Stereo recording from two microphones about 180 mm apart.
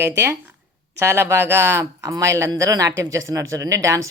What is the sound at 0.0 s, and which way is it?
Speech, 15° right (ahead or behind).